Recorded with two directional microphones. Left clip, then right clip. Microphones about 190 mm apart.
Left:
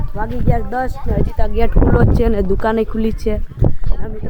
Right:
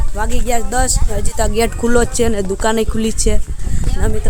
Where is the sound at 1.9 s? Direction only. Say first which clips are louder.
Right 3 dB; centre (ahead or behind).